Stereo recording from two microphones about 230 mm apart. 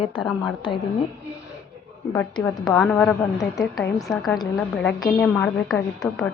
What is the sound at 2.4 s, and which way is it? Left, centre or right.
A woman's voice, centre.